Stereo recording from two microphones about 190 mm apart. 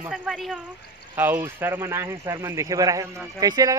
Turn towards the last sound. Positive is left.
turn(degrees=-20)  # may be behind; listen again after turning